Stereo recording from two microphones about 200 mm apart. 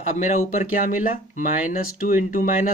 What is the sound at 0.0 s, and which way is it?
Speech, 35° left (ahead or behind).